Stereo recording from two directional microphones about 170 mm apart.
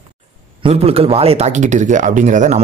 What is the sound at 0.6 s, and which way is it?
Speech, 35° right (ahead or behind).